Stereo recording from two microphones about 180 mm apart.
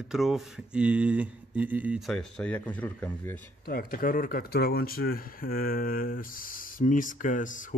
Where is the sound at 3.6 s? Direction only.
55° left (ahead or behind).